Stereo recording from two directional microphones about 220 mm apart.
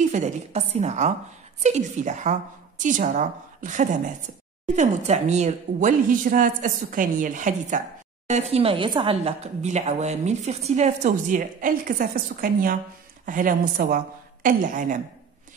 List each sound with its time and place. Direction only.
0.1 s a woman's voice: 30° right (ahead or behind)